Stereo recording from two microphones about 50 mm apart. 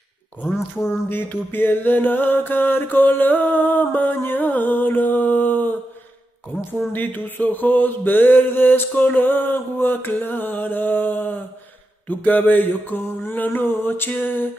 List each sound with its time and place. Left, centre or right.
0.8 s mantra: left
6.9 s mantra: left